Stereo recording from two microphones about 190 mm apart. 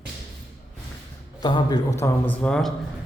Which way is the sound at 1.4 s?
20° left (ahead or behind).